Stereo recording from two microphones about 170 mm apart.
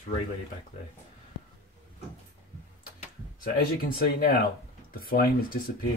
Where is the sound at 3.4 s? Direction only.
60° left (ahead or behind).